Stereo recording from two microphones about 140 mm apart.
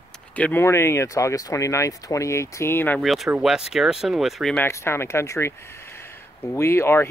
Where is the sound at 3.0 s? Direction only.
Centre (ahead or behind).